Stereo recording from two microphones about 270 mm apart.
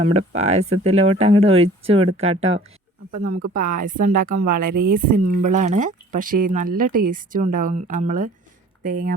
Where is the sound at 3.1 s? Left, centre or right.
Right.